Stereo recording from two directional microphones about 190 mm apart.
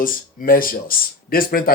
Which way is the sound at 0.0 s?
45° left (ahead or behind).